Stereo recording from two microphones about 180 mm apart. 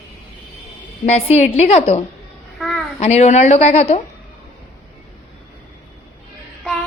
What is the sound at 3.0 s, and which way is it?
Speech, 40° left (ahead or behind).